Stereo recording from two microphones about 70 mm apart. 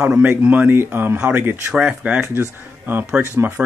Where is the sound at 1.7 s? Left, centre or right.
Centre.